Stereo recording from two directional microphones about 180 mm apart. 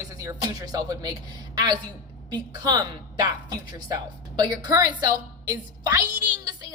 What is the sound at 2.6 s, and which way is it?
A woman's voice, 20° right (ahead or behind).